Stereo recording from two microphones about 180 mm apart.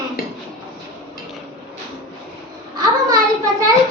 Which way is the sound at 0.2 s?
55° left (ahead or behind).